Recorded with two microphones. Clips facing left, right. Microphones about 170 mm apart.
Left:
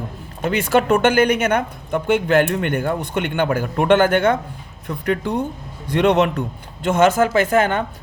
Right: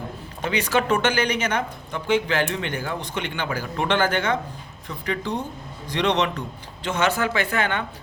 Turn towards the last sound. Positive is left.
turn(degrees=45)  # may be behind; listen again after turning